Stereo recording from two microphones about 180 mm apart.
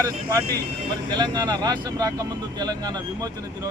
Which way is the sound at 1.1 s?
20° right (ahead or behind).